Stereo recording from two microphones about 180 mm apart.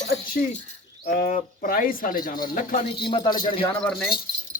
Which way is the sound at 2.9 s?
25° left (ahead or behind).